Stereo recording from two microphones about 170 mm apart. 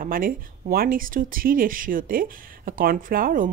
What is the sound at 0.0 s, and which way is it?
Speech, 55° right (ahead or behind).